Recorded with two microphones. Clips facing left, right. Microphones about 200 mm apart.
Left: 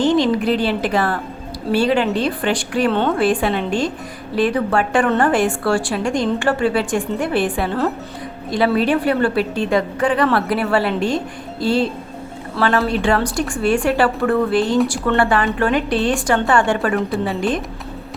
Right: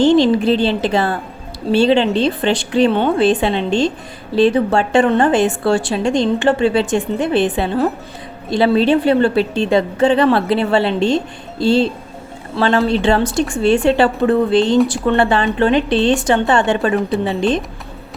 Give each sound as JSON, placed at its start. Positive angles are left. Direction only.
{"t": 0.0, "sound": "a woman's voice", "side_deg": -30}